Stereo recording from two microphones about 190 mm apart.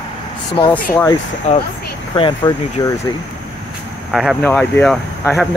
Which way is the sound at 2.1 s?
25° left (ahead or behind).